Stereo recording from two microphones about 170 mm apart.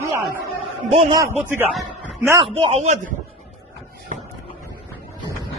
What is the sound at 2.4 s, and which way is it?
Speech, 35° right (ahead or behind).